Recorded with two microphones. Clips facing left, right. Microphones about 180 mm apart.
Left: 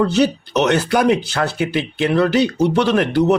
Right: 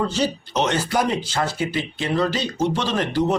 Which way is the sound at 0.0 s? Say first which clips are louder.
Left 7 dB; 65° left (ahead or behind).